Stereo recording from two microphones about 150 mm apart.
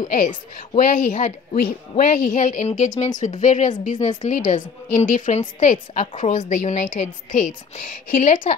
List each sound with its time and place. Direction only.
0.1 s a woman's voice: 55° left (ahead or behind)
1.6 s a woman's voice: 65° left (ahead or behind)